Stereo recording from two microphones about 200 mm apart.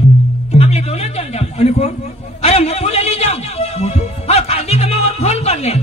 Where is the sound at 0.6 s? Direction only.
30° left (ahead or behind).